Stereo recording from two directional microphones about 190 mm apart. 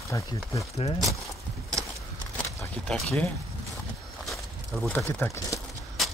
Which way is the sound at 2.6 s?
5° left (ahead or behind).